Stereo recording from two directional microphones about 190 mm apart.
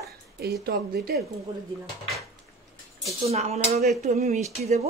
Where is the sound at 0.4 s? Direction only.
55° right (ahead or behind).